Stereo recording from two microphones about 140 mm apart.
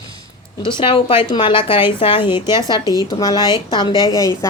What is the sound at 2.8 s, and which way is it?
Speech, 25° right (ahead or behind).